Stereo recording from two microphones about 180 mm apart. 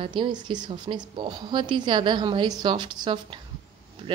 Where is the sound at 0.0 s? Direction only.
25° right (ahead or behind).